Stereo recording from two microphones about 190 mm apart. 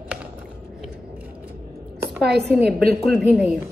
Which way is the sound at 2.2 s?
55° right (ahead or behind).